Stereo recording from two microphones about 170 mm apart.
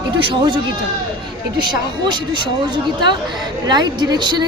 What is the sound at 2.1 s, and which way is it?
Speech, 25° right (ahead or behind).